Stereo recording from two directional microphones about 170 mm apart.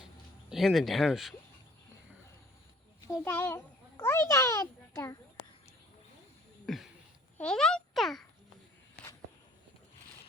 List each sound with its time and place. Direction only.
0.5 s speech: centre (ahead or behind)
3.1 s a child's voice: 10° left (ahead or behind)
6.7 s a sound: centre (ahead or behind)
7.3 s a child's voice: 5° left (ahead or behind)